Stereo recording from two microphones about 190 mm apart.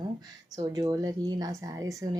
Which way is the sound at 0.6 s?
20° right (ahead or behind).